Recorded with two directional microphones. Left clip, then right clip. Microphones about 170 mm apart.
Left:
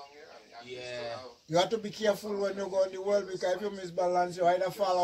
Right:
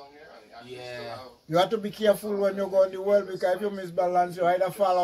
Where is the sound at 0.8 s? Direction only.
25° right (ahead or behind).